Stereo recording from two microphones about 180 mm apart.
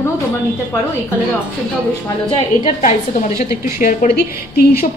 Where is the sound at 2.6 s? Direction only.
45° left (ahead or behind).